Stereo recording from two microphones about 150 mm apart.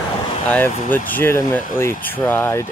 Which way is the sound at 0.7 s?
65° left (ahead or behind).